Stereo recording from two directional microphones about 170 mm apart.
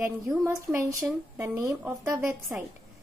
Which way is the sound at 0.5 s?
15° right (ahead or behind).